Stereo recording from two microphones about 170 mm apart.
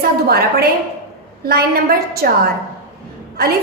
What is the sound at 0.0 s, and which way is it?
A woman's voice, 65° right (ahead or behind).